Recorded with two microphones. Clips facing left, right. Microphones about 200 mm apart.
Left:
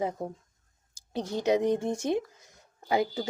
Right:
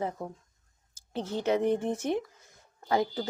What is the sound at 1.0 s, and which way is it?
A woman's voice, 15° left (ahead or behind).